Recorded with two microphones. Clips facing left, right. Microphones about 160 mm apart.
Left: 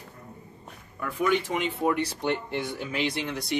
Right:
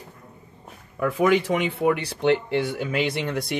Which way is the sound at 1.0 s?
90° right.